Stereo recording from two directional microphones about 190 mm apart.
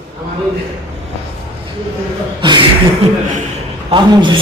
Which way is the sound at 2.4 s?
25° right (ahead or behind).